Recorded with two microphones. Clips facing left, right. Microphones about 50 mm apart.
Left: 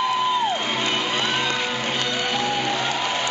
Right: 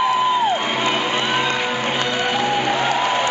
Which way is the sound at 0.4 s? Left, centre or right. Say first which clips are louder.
Right 4 dB; centre.